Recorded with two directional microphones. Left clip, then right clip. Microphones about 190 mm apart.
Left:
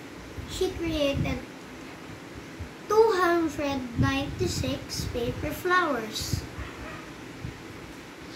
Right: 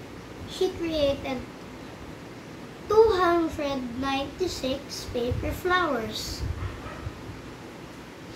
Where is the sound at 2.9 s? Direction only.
Centre (ahead or behind).